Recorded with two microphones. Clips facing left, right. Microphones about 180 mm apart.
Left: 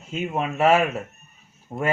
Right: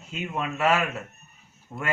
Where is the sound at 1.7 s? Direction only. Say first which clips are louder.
Left 7 dB; 40° left (ahead or behind).